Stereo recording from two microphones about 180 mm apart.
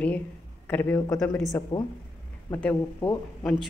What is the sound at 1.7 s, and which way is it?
Speech, 30° left (ahead or behind).